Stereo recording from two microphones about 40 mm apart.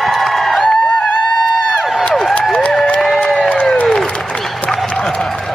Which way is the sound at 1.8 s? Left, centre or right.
Centre.